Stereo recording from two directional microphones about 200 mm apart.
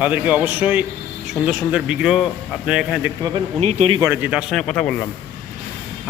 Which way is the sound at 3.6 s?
35° right (ahead or behind).